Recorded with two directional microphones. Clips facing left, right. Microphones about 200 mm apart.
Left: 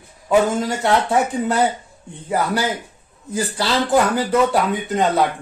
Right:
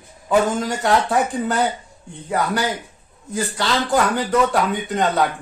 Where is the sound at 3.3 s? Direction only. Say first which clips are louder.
Left 1 dB; 5° left (ahead or behind).